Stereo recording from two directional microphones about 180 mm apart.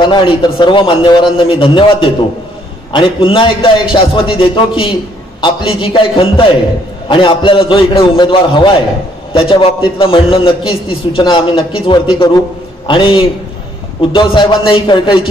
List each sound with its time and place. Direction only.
0.0 s a man's voice: 25° left (ahead or behind)